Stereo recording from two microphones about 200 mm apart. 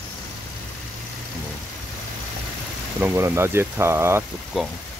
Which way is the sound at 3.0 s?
10° right (ahead or behind).